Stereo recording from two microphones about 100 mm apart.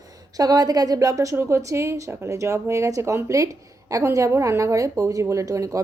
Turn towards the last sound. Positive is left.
turn(degrees=-35)  # may be behind; listen again after turning